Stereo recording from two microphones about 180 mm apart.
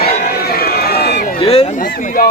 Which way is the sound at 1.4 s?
35° left (ahead or behind).